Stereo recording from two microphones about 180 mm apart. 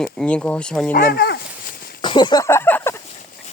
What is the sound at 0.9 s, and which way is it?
Speech, 55° left (ahead or behind).